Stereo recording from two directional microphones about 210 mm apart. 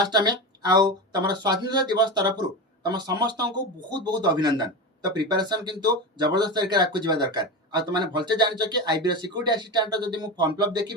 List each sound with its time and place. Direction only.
0.0 s speech: 20° right (ahead or behind)